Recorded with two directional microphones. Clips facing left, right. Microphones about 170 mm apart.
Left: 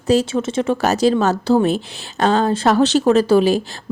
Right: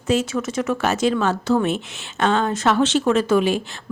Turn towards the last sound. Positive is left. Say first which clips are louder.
# left 4 dB
turn(degrees=35)  # may be behind; listen again after turning